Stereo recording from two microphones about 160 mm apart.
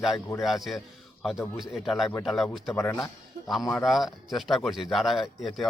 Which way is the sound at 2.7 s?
15° left (ahead or behind).